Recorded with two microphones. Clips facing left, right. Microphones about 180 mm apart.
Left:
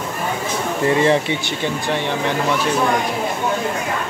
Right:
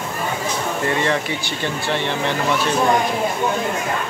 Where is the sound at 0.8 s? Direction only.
30° left (ahead or behind).